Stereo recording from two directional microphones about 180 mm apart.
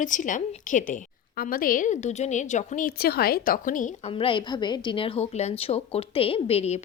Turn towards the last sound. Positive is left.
turn(degrees=35)  # may be behind; listen again after turning